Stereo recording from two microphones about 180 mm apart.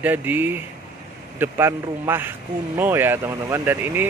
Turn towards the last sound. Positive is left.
turn(degrees=-10)  # may be behind; listen again after turning